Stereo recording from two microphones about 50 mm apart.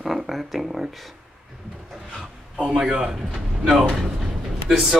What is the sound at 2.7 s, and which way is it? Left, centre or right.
Speech, centre.